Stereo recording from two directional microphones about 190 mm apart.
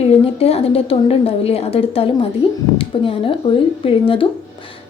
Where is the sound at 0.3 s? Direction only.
30° left (ahead or behind).